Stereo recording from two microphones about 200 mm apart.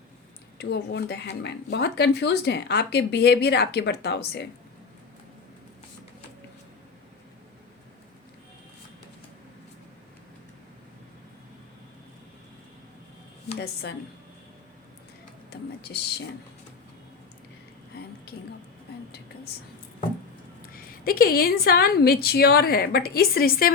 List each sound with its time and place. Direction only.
0.6 s speech: 55° left (ahead or behind)
15.4 s a woman's voice: 55° left (ahead or behind)
20.6 s a woman's voice: 45° left (ahead or behind)